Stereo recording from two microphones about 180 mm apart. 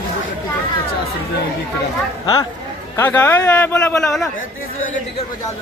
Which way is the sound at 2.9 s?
10° left (ahead or behind).